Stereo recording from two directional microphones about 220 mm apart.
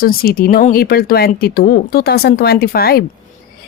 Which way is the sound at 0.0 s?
40° left (ahead or behind).